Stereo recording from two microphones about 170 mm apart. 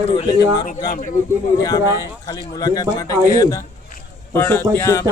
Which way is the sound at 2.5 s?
20° left (ahead or behind).